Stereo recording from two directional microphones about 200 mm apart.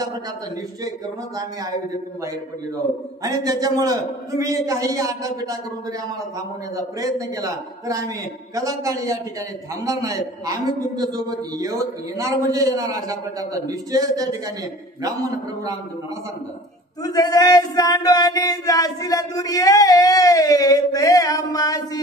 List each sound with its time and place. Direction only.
3.3 s a man's voice: 20° right (ahead or behind)
6.8 s a man's voice: 15° right (ahead or behind)
17.0 s a sound: 20° left (ahead or behind)